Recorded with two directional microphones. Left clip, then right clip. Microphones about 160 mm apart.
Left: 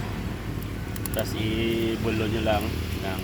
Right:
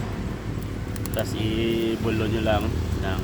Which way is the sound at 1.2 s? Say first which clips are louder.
Right 1 dB; 20° left (ahead or behind).